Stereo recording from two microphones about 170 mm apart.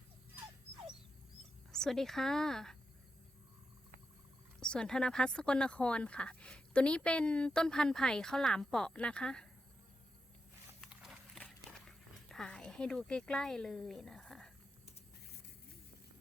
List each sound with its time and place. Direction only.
1.7 s speech: 5° left (ahead or behind)
4.6 s speech: 5° left (ahead or behind)
10.8 s a sound: 5° right (ahead or behind)